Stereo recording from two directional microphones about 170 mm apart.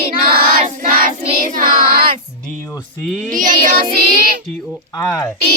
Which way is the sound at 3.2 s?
50° right (ahead or behind).